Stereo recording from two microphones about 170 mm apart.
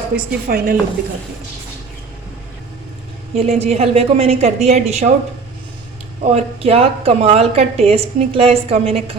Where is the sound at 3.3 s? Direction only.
40° right (ahead or behind).